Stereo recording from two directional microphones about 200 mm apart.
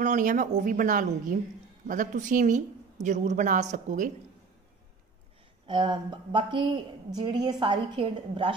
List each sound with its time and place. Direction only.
0.0 s speech: 40° right (ahead or behind)
5.7 s a woman's voice: 25° right (ahead or behind)